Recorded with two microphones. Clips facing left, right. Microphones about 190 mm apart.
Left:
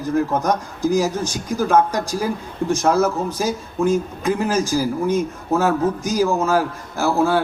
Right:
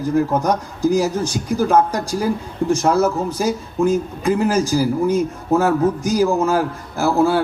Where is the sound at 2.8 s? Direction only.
15° right (ahead or behind).